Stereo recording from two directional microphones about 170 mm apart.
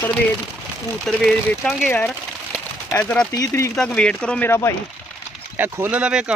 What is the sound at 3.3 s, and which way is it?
Speech, 20° left (ahead or behind).